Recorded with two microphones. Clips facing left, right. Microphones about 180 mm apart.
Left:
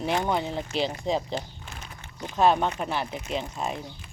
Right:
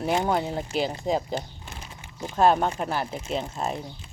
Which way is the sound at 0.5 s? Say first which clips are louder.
Right 1 dB; 5° right (ahead or behind).